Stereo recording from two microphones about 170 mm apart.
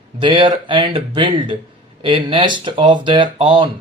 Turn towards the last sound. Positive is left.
turn(degrees=-30)  # may be behind; listen again after turning